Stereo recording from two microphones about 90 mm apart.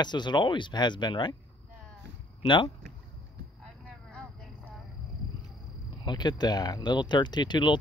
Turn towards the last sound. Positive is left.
turn(degrees=55)  # may be behind; listen again after turning